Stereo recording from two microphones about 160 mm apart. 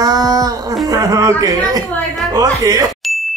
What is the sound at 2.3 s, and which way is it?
Wail, 20° right (ahead or behind).